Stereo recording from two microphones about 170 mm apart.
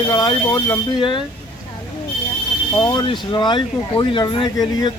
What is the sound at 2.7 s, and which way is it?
Speech, 20° left (ahead or behind).